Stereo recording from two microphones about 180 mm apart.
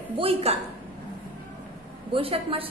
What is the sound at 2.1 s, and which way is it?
Speech, 30° right (ahead or behind).